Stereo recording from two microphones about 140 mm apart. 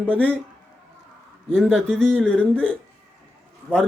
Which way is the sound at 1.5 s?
5° left (ahead or behind).